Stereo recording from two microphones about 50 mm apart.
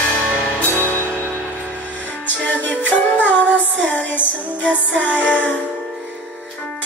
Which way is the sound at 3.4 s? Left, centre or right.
Left.